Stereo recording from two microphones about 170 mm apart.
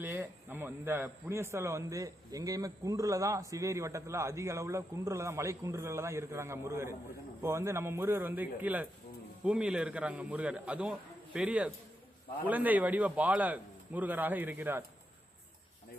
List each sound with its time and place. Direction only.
0.0 s a man's voice: 10° right (ahead or behind)